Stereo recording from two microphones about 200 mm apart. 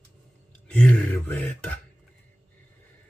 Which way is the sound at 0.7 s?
5° left (ahead or behind).